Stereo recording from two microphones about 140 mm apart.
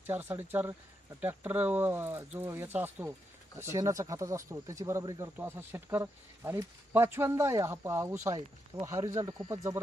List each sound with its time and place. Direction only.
0.0 s speech: 15° right (ahead or behind)